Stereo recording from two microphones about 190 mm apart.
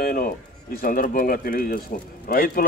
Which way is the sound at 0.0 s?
50° left (ahead or behind).